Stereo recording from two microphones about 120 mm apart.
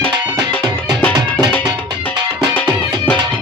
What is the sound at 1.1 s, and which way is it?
Music, 35° right (ahead or behind).